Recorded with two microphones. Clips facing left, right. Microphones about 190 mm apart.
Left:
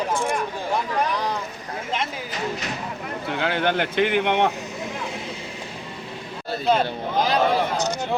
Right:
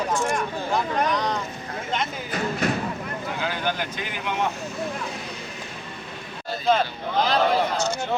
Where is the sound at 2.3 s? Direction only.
55° right (ahead or behind).